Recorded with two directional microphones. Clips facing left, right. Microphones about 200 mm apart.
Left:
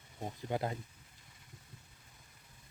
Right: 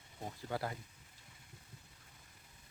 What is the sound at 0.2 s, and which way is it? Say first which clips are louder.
Speech: left 4 dB; 20° left (ahead or behind).